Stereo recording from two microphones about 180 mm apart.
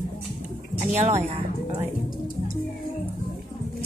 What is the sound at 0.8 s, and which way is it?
Speech, 40° right (ahead or behind).